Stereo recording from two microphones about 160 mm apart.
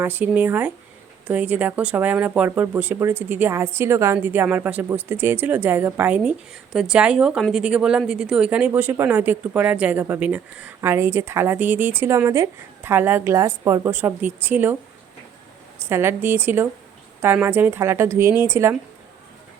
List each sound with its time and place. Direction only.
0.0 s a woman's voice: 10° right (ahead or behind)
15.9 s a woman's voice: 15° right (ahead or behind)